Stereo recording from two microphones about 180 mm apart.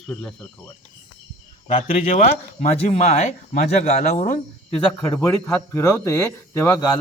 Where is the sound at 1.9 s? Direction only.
50° left (ahead or behind).